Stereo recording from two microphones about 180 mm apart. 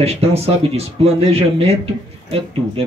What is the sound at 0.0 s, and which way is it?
A man's voice, 35° right (ahead or behind).